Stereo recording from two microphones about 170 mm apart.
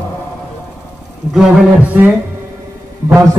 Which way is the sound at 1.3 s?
5° right (ahead or behind).